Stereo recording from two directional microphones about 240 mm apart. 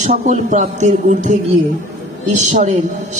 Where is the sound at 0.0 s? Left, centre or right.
Right.